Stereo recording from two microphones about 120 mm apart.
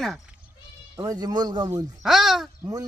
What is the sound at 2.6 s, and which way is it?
Speech, 30° right (ahead or behind).